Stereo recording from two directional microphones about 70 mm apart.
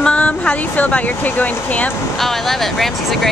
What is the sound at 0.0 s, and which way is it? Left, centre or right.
Speech, centre.